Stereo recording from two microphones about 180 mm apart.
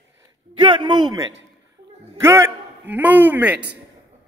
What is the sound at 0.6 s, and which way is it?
A man's voice, 25° right (ahead or behind).